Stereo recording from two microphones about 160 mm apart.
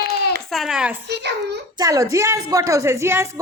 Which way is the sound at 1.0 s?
90° right.